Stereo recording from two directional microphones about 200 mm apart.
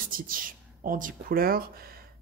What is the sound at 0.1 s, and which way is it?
Speech, 45° right (ahead or behind).